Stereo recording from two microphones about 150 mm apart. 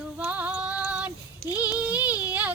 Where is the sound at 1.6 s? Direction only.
10° right (ahead or behind).